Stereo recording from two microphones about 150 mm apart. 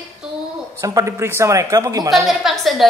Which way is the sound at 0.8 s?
20° right (ahead or behind).